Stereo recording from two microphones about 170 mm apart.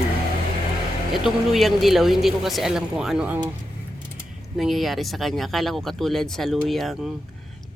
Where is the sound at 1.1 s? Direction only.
Centre (ahead or behind).